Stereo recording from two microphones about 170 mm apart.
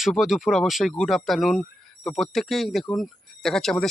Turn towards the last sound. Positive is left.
turn(degrees=0)  # may be behind; listen again after turning